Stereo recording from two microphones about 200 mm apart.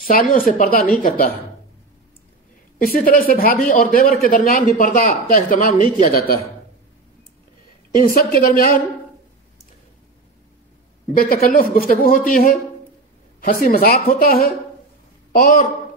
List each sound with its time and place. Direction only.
0.0 s speech: 45° left (ahead or behind)
2.8 s speech: 45° left (ahead or behind)
7.9 s speech: 45° left (ahead or behind)
11.7 s a woman's voice: 45° left (ahead or behind)